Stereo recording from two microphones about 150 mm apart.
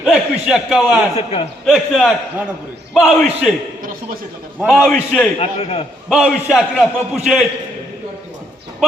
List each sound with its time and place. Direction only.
0.0 s a man's voice: 5° right (ahead or behind)
1.1 s a man's voice: 45° left (ahead or behind)
1.6 s a man's voice: centre (ahead or behind)
4.6 s a man's voice: centre (ahead or behind)
5.4 s a man's voice: 40° left (ahead or behind)
6.1 s a man's voice: 5° right (ahead or behind)